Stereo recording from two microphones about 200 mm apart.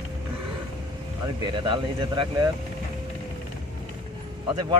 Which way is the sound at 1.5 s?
25° right (ahead or behind).